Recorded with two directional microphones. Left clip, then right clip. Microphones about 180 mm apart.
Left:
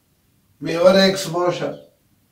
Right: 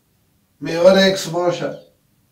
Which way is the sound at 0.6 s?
10° left (ahead or behind).